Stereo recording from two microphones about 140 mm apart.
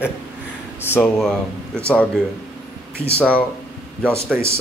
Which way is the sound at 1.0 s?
5° left (ahead or behind).